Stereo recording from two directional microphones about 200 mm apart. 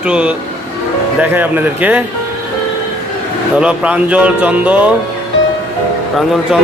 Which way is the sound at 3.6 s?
5° right (ahead or behind).